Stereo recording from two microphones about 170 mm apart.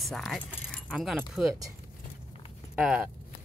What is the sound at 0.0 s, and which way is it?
Speech, centre (ahead or behind).